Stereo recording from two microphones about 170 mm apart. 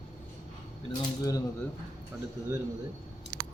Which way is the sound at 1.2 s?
20° left (ahead or behind).